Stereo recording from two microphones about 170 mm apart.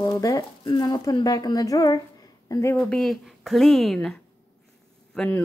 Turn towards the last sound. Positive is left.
turn(degrees=5)  # may be behind; listen again after turning